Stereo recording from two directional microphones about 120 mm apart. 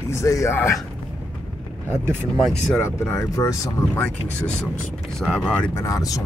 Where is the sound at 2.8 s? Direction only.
25° left (ahead or behind).